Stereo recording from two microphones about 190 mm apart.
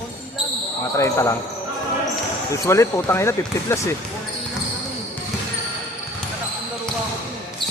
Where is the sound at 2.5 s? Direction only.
15° left (ahead or behind).